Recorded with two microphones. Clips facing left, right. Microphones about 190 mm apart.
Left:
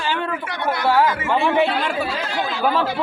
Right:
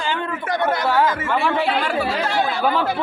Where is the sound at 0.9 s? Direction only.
15° left (ahead or behind).